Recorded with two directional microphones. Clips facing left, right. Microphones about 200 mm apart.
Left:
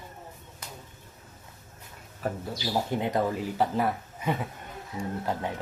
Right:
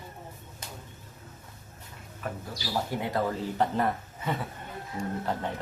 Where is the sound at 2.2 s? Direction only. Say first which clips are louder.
Left 5 dB; 20° left (ahead or behind).